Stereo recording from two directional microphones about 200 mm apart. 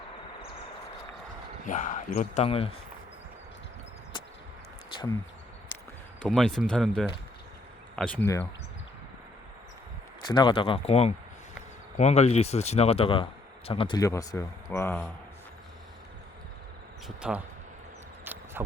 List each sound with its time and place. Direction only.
1.6 s speech: 40° left (ahead or behind)
5.7 s a sound: 20° left (ahead or behind)
6.2 s speech: centre (ahead or behind)
10.2 s speech: 25° left (ahead or behind)
17.2 s speech: 5° right (ahead or behind)
18.3 s a sound: 10° right (ahead or behind)